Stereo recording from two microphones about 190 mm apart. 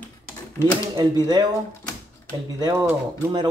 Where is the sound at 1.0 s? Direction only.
20° right (ahead or behind).